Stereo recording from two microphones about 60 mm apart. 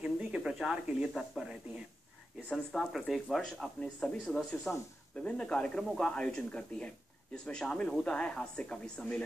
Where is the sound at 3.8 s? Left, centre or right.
Centre.